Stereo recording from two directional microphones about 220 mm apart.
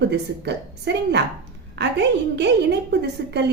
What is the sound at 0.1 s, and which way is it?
A woman's voice, 50° right (ahead or behind).